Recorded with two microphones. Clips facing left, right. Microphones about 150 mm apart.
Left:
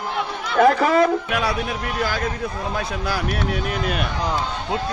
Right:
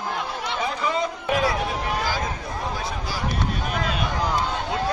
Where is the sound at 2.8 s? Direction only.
65° left (ahead or behind).